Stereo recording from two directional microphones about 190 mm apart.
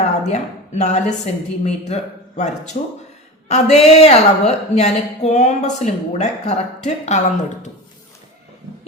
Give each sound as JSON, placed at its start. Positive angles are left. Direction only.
{"t": 0.0, "sound": "a woman's voice", "side_deg": 35}